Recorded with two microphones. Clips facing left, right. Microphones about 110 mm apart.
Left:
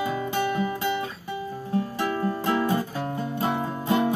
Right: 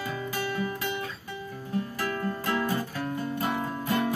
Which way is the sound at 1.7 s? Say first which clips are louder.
Left 4 dB; 25° left (ahead or behind).